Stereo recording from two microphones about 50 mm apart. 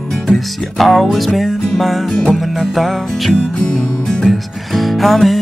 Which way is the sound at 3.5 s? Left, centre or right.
Left.